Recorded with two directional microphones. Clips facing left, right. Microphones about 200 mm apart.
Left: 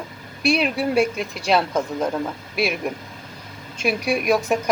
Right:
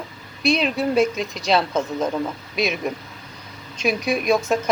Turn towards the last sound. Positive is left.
turn(degrees=10)  # may be behind; listen again after turning